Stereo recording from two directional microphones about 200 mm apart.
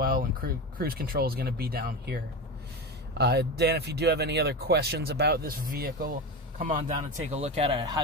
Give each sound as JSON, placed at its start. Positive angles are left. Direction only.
{"t": 0.0, "sound": "speech", "side_deg": -45}
{"t": 3.2, "sound": "speech", "side_deg": -55}